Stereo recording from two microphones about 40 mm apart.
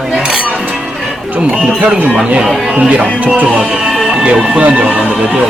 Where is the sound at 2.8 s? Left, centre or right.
Right.